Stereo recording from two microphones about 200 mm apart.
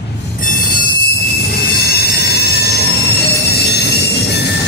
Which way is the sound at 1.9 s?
55° left (ahead or behind).